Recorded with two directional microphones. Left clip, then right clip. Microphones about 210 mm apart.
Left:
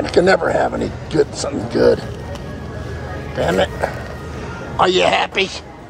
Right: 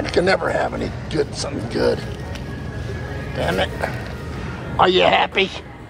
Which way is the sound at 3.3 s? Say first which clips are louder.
Left 4 dB; 15° left (ahead or behind).